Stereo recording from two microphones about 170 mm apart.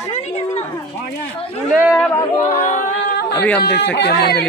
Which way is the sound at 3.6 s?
80° left.